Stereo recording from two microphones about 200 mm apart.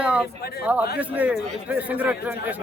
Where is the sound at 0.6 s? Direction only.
10° right (ahead or behind).